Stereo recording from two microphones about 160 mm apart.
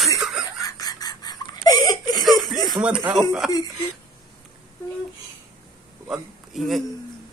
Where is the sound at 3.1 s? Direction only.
Centre (ahead or behind).